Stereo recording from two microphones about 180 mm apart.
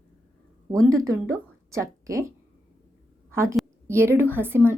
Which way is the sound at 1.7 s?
15° right (ahead or behind).